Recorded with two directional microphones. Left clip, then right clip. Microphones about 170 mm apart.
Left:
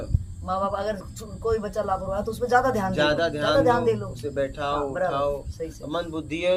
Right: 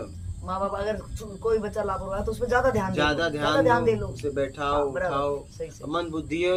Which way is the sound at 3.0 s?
5° right (ahead or behind).